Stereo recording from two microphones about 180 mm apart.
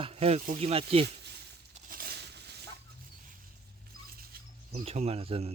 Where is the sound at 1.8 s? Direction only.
55° right (ahead or behind).